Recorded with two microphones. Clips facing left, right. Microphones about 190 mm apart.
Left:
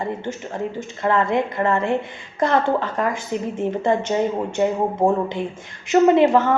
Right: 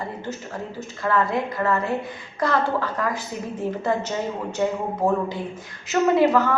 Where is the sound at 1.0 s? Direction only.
20° left (ahead or behind).